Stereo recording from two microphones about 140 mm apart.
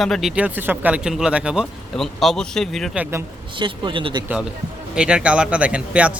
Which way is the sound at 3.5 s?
35° right (ahead or behind).